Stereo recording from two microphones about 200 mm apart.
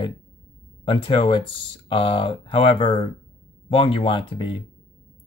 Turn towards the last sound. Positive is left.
turn(degrees=25)  # may be behind; listen again after turning